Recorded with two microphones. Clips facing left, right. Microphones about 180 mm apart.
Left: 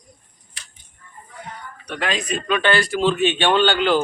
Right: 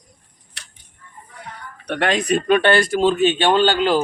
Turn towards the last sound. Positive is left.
turn(degrees=-35)  # may be behind; listen again after turning